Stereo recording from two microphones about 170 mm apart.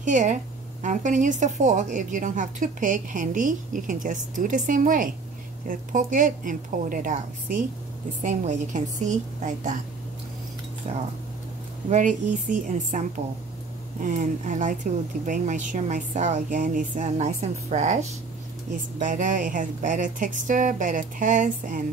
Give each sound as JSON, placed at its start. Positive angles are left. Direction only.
{"t": 0.0, "sound": "a woman's voice", "side_deg": -45}
{"t": 11.9, "sound": "a woman's voice", "side_deg": -45}